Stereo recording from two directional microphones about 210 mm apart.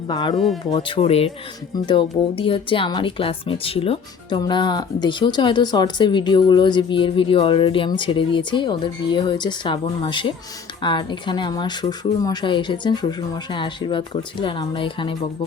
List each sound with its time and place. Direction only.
0.1 s speech: 20° left (ahead or behind)
0.3 s speech: centre (ahead or behind)
0.7 s speech: 25° left (ahead or behind)